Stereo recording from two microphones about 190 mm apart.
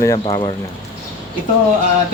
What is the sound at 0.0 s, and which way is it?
Speech, 15° left (ahead or behind).